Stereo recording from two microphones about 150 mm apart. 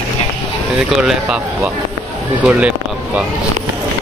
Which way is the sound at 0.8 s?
5° right (ahead or behind).